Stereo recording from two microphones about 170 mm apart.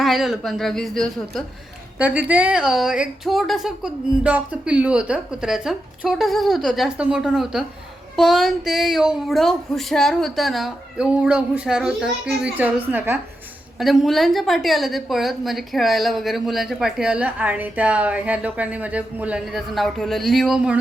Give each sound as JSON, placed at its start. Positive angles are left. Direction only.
{"t": 0.0, "sound": "a woman's voice", "side_deg": 0}
{"t": 2.0, "sound": "a woman's voice", "side_deg": -10}